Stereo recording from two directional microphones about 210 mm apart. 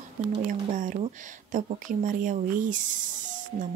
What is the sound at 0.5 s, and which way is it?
A woman's voice, 35° right (ahead or behind).